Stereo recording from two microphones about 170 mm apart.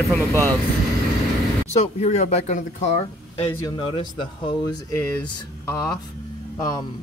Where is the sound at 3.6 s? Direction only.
25° left (ahead or behind).